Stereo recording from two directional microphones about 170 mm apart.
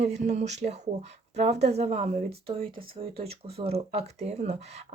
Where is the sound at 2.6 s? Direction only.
60° right (ahead or behind).